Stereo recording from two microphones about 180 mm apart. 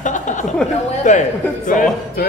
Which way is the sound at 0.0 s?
45° left (ahead or behind).